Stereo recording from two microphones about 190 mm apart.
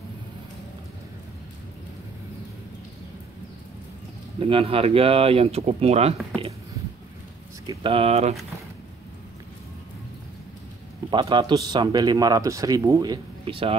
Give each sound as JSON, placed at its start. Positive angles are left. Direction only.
{"t": 4.4, "sound": "speech", "side_deg": -30}
{"t": 7.6, "sound": "speech", "side_deg": -25}
{"t": 11.1, "sound": "a man's voice", "side_deg": -25}